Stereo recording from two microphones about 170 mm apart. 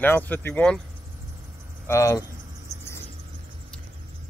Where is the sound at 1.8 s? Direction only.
15° left (ahead or behind).